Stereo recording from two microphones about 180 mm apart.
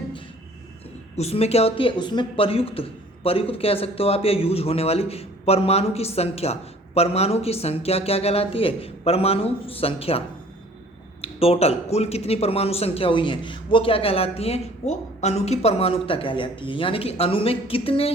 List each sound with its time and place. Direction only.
1.1 s speech: 35° left (ahead or behind)